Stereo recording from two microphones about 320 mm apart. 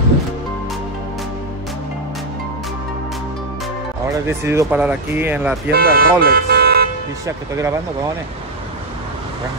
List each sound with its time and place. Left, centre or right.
4.3 s speech: centre
5.7 s speech: right
7.2 s speech: centre